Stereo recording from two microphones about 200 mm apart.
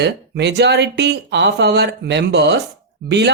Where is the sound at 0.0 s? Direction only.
60° right (ahead or behind).